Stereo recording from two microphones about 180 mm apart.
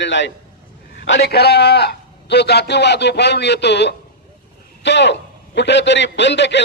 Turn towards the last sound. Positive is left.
turn(degrees=75)  # may be behind; listen again after turning